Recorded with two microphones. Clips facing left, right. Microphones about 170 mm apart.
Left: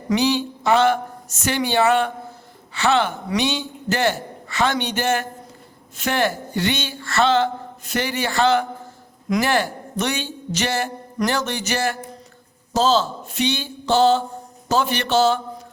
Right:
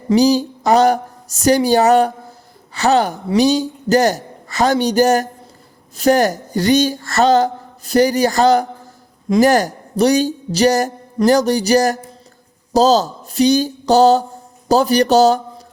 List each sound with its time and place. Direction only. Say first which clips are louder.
0.1 s a man's voice: right 7 dB; 40° right (ahead or behind)